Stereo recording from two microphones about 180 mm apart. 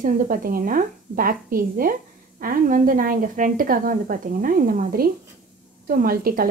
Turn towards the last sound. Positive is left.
turn(degrees=-55)  # may be behind; listen again after turning